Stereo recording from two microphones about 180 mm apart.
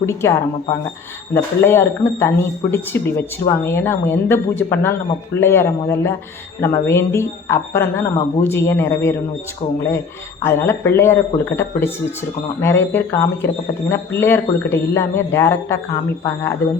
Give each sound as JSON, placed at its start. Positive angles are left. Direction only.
{"t": 0.0, "sound": "speech", "side_deg": 15}
{"t": 10.4, "sound": "speech", "side_deg": 15}